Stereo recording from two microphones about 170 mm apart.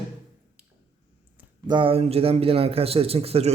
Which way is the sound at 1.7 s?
30° right (ahead or behind).